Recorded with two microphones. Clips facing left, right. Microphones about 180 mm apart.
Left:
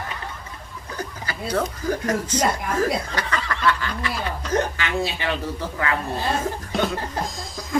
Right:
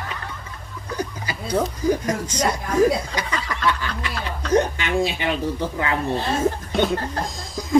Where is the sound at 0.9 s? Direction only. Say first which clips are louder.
Right 3 dB; 15° right (ahead or behind).